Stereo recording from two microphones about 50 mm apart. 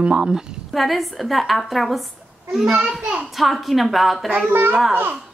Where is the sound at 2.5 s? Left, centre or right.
Centre.